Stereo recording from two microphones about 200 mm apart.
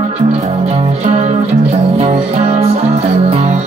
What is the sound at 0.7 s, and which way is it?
Music, 30° right (ahead or behind).